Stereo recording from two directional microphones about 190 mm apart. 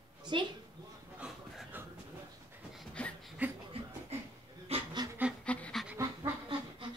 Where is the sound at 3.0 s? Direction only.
5° left (ahead or behind).